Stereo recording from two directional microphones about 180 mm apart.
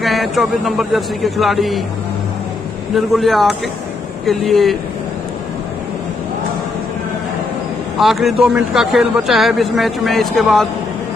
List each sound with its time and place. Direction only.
0.0 s a man's voice: centre (ahead or behind)
3.1 s a man's voice: centre (ahead or behind)
8.0 s a man's voice: centre (ahead or behind)